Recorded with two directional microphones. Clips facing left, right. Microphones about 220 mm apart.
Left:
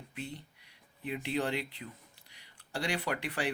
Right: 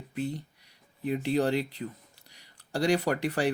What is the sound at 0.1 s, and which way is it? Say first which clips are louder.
A man's voice: right 10 dB; 40° right (ahead or behind).